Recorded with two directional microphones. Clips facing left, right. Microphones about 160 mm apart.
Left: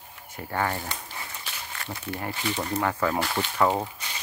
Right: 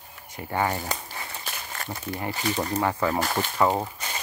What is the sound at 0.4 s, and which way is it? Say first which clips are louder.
Speech: right 2 dB; 15° right (ahead or behind).